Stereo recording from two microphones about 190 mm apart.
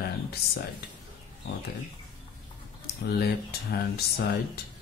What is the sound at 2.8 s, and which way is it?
Speech, 55° left (ahead or behind).